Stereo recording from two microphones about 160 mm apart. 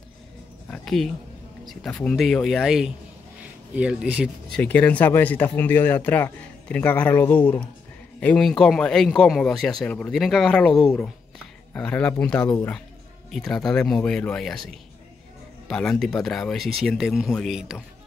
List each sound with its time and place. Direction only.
0.7 s a sound: centre (ahead or behind)
1.7 s a man's voice: 5° left (ahead or behind)
4.6 s a man's voice: 10° left (ahead or behind)